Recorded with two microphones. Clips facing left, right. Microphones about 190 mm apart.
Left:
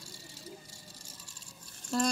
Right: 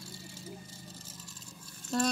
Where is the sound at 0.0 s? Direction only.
40° left (ahead or behind).